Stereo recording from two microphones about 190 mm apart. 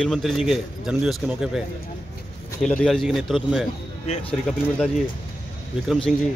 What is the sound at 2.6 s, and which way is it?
Speech, 5° left (ahead or behind).